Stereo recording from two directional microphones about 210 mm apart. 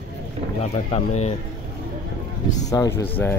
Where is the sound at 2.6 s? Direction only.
15° left (ahead or behind).